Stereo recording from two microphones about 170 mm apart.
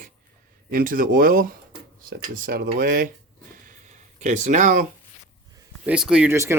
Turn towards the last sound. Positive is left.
turn(degrees=-15)  # may be behind; listen again after turning